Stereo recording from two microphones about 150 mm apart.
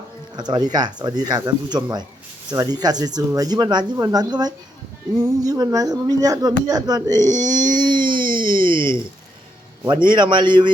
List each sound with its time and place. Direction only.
0.3 s speech: 30° right (ahead or behind)
8.5 s a sound: 35° right (ahead or behind)
10.1 s a man's voice: 30° right (ahead or behind)